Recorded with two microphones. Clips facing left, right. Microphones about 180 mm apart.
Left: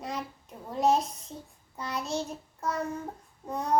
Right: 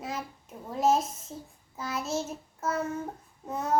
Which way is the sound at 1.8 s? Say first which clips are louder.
Right 1 dB; 5° right (ahead or behind).